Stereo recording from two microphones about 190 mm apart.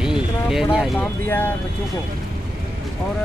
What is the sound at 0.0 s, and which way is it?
Vehicle, 5° right (ahead or behind).